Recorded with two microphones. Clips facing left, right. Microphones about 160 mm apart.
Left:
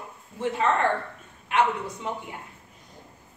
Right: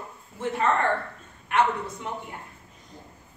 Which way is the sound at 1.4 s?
20° left (ahead or behind).